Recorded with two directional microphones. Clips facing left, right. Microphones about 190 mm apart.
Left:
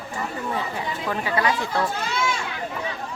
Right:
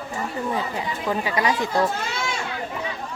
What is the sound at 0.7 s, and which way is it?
Speech, 15° right (ahead or behind).